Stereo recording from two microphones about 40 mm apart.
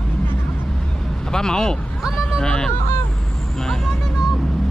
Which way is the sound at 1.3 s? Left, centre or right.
Centre.